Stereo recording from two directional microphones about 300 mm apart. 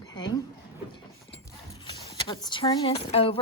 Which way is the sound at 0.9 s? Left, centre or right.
Centre.